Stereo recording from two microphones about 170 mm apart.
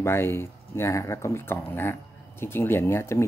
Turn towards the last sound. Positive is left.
turn(degrees=15)  # may be behind; listen again after turning